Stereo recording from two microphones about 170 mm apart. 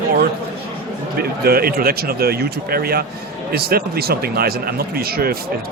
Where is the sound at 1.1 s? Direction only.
60° right (ahead or behind).